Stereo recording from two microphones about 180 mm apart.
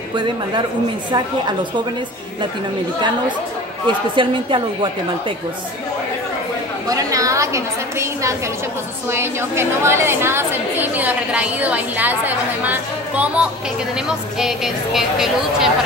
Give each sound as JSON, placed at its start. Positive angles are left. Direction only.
{"t": 0.1, "sound": "a woman's voice", "side_deg": -25}
{"t": 4.1, "sound": "a woman's voice", "side_deg": -30}
{"t": 6.9, "sound": "a woman's voice", "side_deg": -20}